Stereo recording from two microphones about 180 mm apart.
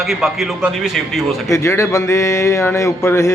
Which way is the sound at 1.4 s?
15° left (ahead or behind).